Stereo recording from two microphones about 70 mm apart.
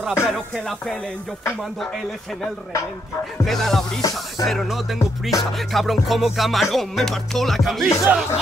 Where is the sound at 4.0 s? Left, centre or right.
Left.